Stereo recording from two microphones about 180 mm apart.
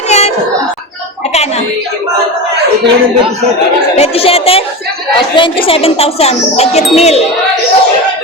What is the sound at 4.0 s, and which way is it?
Speech, 35° left (ahead or behind).